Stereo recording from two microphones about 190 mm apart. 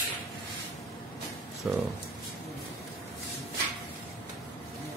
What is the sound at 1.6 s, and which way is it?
Speech, centre (ahead or behind).